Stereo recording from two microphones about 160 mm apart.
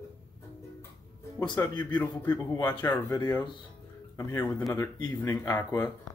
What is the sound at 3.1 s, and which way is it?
Speech, 25° left (ahead or behind).